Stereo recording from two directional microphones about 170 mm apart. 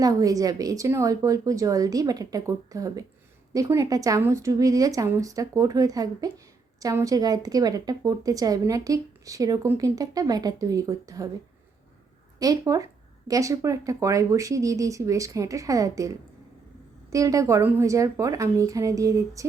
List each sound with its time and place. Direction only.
0.0 s a woman's voice: 20° right (ahead or behind)
12.4 s a woman's voice: 20° right (ahead or behind)